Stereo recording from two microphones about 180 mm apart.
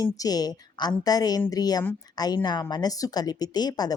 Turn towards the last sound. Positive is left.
turn(degrees=20)  # may be behind; listen again after turning